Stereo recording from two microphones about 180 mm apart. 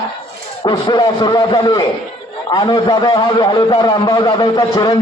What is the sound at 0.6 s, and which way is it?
A man's voice, 25° left (ahead or behind).